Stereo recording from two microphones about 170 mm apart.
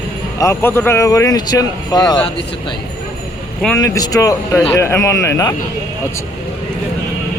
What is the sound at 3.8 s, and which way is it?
Speech, 20° left (ahead or behind).